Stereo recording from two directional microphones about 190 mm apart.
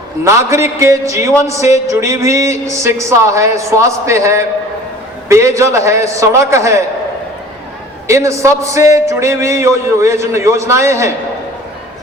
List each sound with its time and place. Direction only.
0.3 s a man's voice: 15° right (ahead or behind)
8.0 s a man's voice: 15° right (ahead or behind)